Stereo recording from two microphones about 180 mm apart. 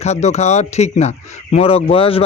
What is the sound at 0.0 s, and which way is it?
Speech, 40° left (ahead or behind).